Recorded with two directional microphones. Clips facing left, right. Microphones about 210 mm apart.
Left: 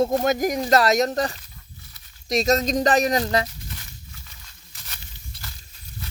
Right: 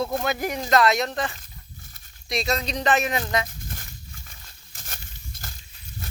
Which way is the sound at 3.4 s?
50° right (ahead or behind).